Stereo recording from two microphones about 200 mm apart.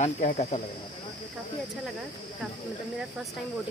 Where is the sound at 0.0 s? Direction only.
40° left (ahead or behind).